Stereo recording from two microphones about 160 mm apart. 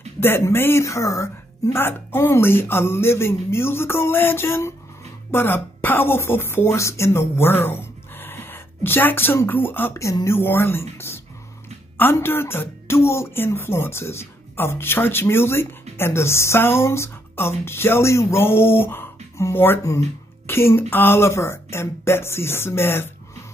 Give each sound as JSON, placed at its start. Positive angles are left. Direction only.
{"t": 0.2, "sound": "speech", "side_deg": 15}